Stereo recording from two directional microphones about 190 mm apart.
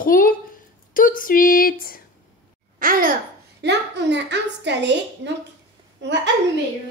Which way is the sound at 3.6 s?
65° right (ahead or behind).